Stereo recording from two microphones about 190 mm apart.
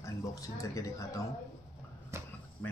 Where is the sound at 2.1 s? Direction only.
15° right (ahead or behind).